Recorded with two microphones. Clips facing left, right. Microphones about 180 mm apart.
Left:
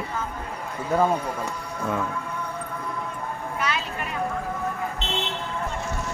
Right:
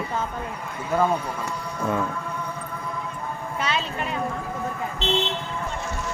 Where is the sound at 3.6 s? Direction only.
25° right (ahead or behind).